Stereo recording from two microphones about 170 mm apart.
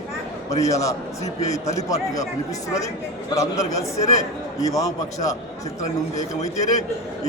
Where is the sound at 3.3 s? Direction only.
20° left (ahead or behind).